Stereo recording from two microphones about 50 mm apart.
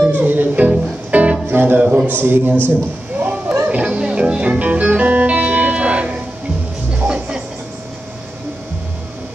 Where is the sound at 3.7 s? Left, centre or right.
Right.